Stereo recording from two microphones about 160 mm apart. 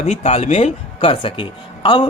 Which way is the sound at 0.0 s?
40° left (ahead or behind).